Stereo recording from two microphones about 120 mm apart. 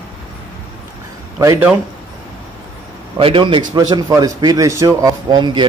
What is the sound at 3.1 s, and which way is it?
Speech, 45° right (ahead or behind).